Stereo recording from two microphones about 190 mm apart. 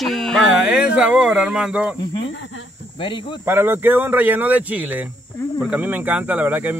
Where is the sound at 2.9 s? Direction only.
25° left (ahead or behind).